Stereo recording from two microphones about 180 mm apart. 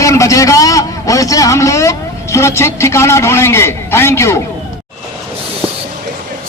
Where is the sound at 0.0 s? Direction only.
15° left (ahead or behind).